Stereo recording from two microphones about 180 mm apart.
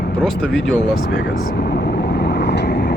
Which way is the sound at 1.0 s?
60° left (ahead or behind).